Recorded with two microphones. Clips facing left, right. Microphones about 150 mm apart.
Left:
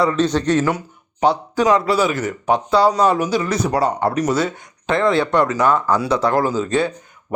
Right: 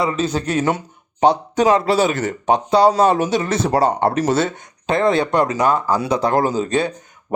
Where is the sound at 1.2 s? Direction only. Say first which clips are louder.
Right 2 dB; 20° right (ahead or behind).